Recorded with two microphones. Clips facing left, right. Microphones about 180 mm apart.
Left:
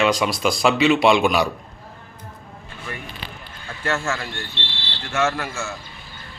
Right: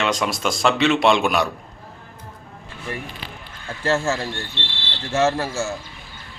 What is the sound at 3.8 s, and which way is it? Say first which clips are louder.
Speech: right 4 dB; 30° right (ahead or behind).